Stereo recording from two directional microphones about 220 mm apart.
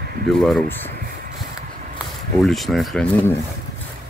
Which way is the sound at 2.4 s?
Centre (ahead or behind).